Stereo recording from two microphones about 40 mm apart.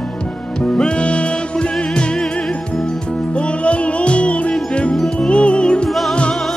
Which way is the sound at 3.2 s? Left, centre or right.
Left.